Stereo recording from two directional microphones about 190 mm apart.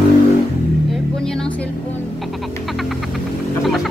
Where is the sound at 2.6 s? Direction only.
Centre (ahead or behind).